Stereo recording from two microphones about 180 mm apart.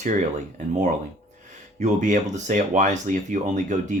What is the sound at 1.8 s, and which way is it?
Speech, 45° right (ahead or behind).